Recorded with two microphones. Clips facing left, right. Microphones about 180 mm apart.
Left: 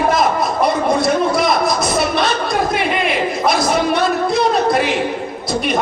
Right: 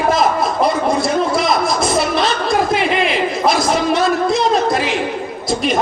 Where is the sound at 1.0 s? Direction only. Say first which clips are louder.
Left 1 dB; 25° right (ahead or behind).